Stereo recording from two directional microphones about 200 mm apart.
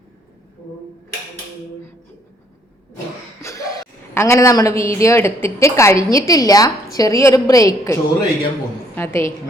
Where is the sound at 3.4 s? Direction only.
15° left (ahead or behind).